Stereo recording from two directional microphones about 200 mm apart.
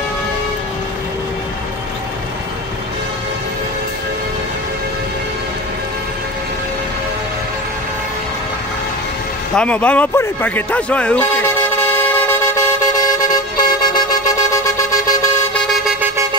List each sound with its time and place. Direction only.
9.6 s music: 5° left (ahead or behind)